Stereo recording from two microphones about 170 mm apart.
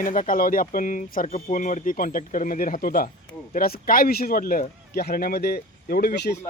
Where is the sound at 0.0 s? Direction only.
50° left (ahead or behind).